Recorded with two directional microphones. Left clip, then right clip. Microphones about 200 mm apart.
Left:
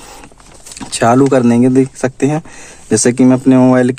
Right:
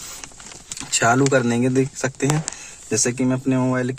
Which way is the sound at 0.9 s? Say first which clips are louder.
Left 7 dB; 60° left (ahead or behind).